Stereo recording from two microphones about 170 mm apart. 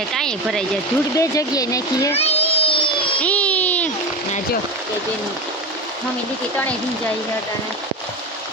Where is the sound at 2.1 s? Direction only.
35° left (ahead or behind).